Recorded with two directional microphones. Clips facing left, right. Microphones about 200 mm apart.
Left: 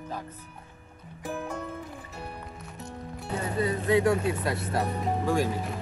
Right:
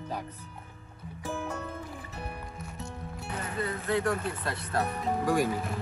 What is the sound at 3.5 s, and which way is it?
Speech, 20° left (ahead or behind).